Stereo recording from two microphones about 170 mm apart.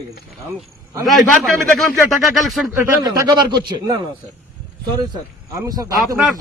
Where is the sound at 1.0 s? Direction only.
Centre (ahead or behind).